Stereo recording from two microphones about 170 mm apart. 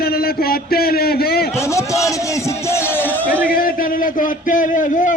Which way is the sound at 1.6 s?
15° left (ahead or behind).